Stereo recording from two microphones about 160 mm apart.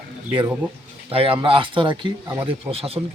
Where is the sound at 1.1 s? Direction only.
35° right (ahead or behind).